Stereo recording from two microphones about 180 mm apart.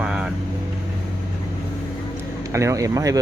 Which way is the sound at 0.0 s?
5° right (ahead or behind).